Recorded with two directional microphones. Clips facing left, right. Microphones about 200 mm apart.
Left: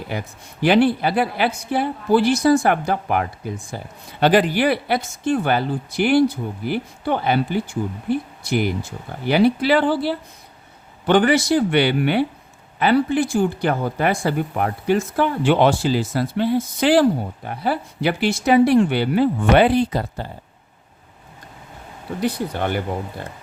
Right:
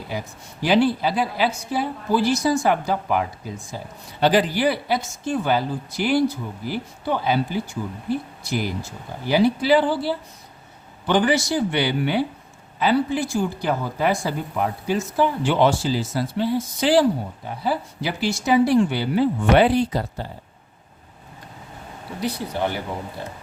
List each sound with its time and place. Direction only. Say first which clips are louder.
0.1 s speech: left 2 dB; 60° left (ahead or behind)
22.2 s speech: left 2 dB; 55° left (ahead or behind)